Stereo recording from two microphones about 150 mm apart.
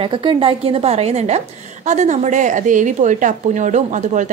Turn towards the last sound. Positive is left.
turn(degrees=-55)  # may be behind; listen again after turning